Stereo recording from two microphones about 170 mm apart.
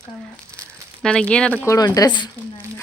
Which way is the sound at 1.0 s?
5° left (ahead or behind).